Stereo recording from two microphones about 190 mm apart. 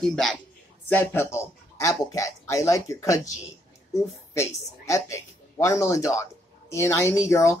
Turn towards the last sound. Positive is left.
turn(degrees=15)  # may be behind; listen again after turning